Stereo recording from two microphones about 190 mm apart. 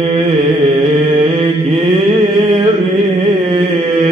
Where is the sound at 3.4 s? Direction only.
35° right (ahead or behind).